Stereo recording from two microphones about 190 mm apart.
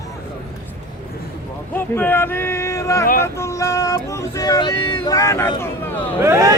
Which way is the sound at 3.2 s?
15° left (ahead or behind).